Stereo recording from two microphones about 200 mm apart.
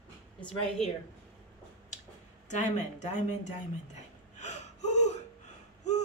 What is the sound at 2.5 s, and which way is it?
Speech, 35° left (ahead or behind).